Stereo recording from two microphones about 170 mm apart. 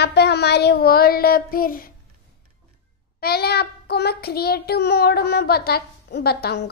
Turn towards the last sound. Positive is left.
turn(degrees=70)  # may be behind; listen again after turning